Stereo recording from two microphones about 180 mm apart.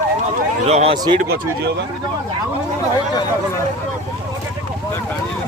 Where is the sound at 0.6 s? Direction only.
35° right (ahead or behind).